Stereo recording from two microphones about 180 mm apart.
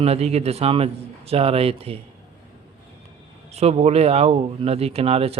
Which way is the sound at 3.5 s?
35° right (ahead or behind).